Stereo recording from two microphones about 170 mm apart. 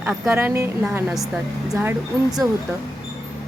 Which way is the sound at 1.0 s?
Centre (ahead or behind).